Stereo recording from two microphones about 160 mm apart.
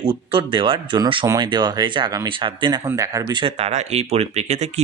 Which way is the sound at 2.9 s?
20° right (ahead or behind).